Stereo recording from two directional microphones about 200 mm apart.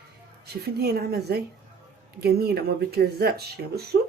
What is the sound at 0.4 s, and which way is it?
Speech, 55° right (ahead or behind).